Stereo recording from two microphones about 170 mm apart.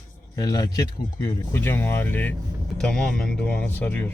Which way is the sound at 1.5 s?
15° left (ahead or behind).